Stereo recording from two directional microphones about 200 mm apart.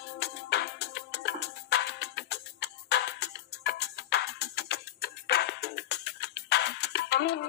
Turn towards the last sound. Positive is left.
turn(degrees=55)  # may be behind; listen again after turning